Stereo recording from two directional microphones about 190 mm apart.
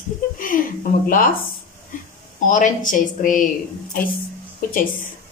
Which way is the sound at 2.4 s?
40° left (ahead or behind).